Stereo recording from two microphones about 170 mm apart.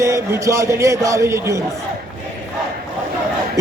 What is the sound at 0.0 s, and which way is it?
A man's voice, 20° right (ahead or behind).